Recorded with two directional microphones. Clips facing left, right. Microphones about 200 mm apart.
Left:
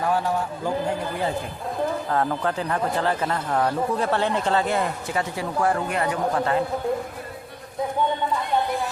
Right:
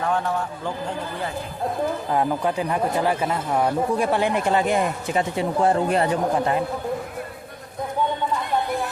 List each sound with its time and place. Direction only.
0.1 s a man's voice: 10° left (ahead or behind)
2.0 s speech: 15° right (ahead or behind); by 6.1 s 30° right (ahead or behind)
6.3 s speech: 20° right (ahead or behind)